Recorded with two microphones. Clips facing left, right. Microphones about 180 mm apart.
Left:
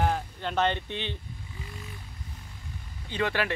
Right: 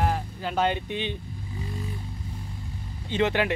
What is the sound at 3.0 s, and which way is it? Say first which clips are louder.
Speech: right 5 dB; 20° right (ahead or behind).